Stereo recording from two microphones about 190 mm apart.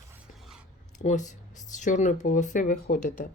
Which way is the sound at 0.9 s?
40° left (ahead or behind).